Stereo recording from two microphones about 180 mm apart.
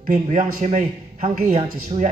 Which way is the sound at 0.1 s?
45° right (ahead or behind).